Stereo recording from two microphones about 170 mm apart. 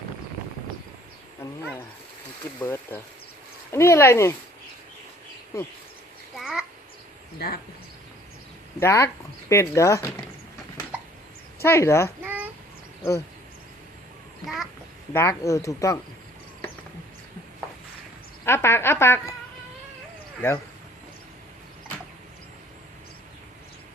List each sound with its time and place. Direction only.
2.6 s speech: 15° left (ahead or behind)
6.3 s a sound: centre (ahead or behind)
7.3 s speech: 65° left (ahead or behind)
8.8 s speech: 15° left (ahead or behind)
11.6 s speech: 15° left (ahead or behind)
12.2 s a sound: 10° right (ahead or behind)
14.4 s a child's voice: centre (ahead or behind)
15.1 s speech: 15° left (ahead or behind)
18.4 s speech: 15° left (ahead or behind)